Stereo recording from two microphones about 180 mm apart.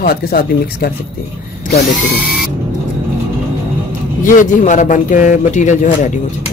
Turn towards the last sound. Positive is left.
turn(degrees=45)  # may be behind; listen again after turning